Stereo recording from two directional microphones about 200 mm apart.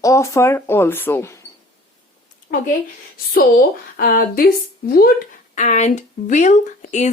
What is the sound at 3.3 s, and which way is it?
Speech, 50° left (ahead or behind).